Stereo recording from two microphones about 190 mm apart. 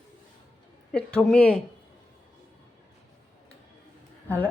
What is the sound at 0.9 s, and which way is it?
Speech, 5° left (ahead or behind).